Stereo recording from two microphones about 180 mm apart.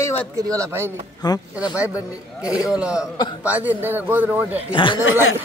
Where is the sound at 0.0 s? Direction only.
10° left (ahead or behind).